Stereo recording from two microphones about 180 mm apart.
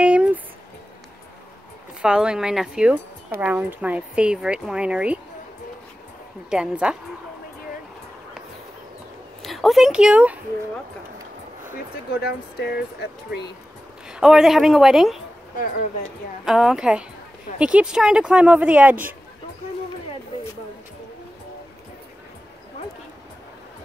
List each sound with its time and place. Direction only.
0.0 s a sound: 5° right (ahead or behind)
2.0 s speech: 5° right (ahead or behind)
6.5 s speech: 5° right (ahead or behind)
9.4 s speech: centre (ahead or behind)
12.1 s speech: 60° left (ahead or behind)
14.0 s speech: 5° right (ahead or behind)
16.4 s speech: 5° right (ahead or behind)